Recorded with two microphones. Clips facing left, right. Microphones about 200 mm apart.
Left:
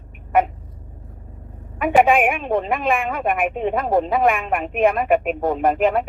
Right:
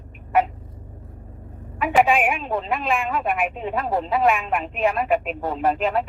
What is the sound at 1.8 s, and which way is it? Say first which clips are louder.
A woman's voice: left 3 dB; 55° left (ahead or behind).